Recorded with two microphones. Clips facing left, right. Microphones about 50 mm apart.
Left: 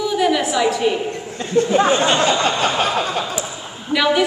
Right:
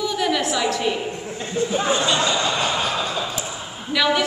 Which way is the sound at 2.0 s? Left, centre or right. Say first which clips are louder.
Left 4 dB; left.